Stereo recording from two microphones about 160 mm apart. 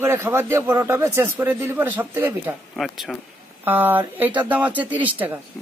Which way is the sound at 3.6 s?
10° right (ahead or behind).